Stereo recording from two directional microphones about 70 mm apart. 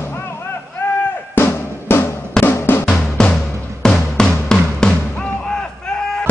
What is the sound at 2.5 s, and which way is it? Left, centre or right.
Music, left.